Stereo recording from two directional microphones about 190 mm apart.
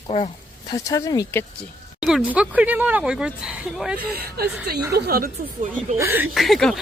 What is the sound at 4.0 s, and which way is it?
A woman's voice, 55° right (ahead or behind).